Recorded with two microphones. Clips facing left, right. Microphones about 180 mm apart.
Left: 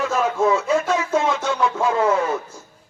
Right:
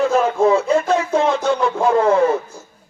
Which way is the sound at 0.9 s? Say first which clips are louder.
Right 3 dB; 30° right (ahead or behind).